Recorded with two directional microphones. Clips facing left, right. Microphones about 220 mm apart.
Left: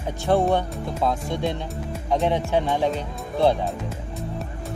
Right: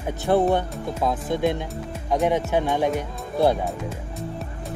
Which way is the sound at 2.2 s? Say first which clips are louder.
Right 2 dB; 15° right (ahead or behind).